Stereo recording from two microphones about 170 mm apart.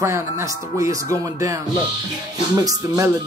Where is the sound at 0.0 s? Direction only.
15° right (ahead or behind).